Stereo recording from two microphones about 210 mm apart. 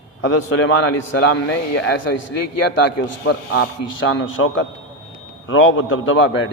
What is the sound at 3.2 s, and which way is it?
A man's voice, 50° left (ahead or behind).